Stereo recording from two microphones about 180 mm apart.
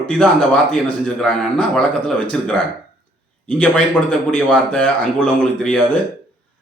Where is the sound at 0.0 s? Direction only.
5° left (ahead or behind).